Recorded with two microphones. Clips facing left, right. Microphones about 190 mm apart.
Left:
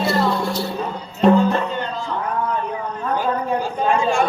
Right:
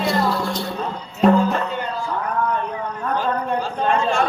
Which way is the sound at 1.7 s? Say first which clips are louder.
Even; 10° right (ahead or behind).